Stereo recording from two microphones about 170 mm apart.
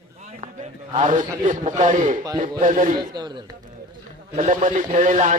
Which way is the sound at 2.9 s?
25° right (ahead or behind).